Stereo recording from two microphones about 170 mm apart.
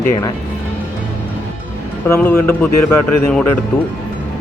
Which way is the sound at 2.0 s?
15° left (ahead or behind).